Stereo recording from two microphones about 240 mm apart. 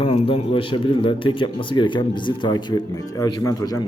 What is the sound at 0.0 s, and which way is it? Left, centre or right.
Speech, left.